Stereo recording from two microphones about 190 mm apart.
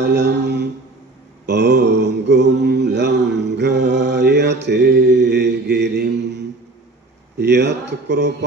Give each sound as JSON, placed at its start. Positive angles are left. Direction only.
{"t": 0.0, "sound": "mantra", "side_deg": -65}
{"t": 7.3, "sound": "speech", "side_deg": -60}